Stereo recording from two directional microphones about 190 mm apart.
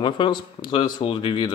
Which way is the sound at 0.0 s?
25° left (ahead or behind).